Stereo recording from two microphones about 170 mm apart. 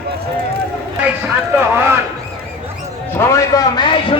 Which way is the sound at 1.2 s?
10° right (ahead or behind).